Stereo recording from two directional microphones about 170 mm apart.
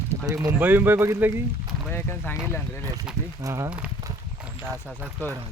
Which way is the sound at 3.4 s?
20° right (ahead or behind).